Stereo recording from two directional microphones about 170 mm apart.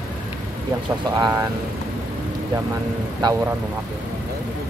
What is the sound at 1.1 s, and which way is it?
Speech, 25° right (ahead or behind).